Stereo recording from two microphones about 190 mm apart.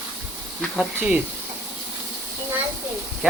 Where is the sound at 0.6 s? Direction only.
Centre (ahead or behind).